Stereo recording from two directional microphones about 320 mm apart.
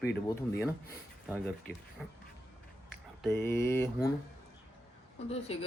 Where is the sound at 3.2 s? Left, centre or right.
Centre.